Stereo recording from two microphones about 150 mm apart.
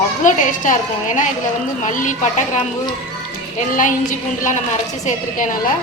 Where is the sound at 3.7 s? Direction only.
60° left (ahead or behind).